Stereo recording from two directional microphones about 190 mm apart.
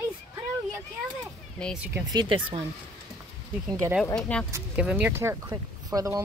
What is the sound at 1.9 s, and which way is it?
Speech, 20° right (ahead or behind).